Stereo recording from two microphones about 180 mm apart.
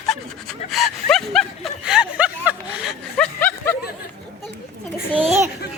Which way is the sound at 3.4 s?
10° left (ahead or behind).